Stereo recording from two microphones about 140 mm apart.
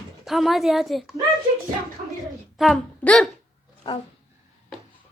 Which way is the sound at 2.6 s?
Centre (ahead or behind).